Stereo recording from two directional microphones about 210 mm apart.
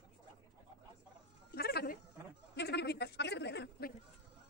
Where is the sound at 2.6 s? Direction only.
50° left (ahead or behind).